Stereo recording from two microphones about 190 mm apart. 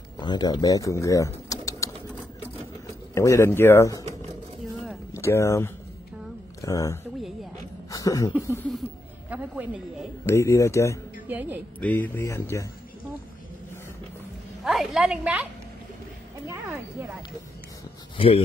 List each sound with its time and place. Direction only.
0.2 s speech: 20° left (ahead or behind)
3.2 s speech: 15° left (ahead or behind)
5.1 s speech: 15° left (ahead or behind)
7.9 s a sound: 20° left (ahead or behind)
8.3 s speech: 10° right (ahead or behind)
10.2 s speech: 15° left (ahead or behind)
11.2 s speech: 10° right (ahead or behind)
11.8 s speech: 10° left (ahead or behind)
14.6 s a woman's voice: centre (ahead or behind)
18.1 s speech: 30° left (ahead or behind)